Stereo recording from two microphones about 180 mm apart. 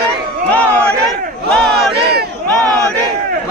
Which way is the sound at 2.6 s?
20° right (ahead or behind).